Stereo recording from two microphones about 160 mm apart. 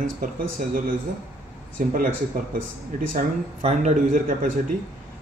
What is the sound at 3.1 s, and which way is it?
A man's voice, 50° right (ahead or behind).